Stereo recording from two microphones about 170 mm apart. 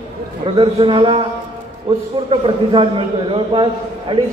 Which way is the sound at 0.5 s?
30° right (ahead or behind).